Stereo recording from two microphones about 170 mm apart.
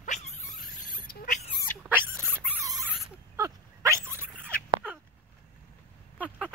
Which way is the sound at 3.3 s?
20° right (ahead or behind).